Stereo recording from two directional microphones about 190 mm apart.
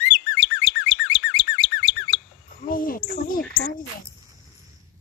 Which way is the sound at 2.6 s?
45° left (ahead or behind).